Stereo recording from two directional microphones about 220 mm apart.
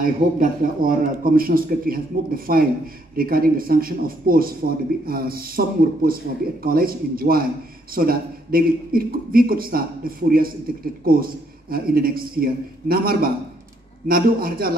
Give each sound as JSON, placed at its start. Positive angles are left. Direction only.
{"t": 0.0, "sound": "a man's voice", "side_deg": -40}